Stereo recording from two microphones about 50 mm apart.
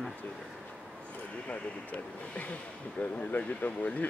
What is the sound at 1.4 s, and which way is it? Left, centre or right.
Speech, left.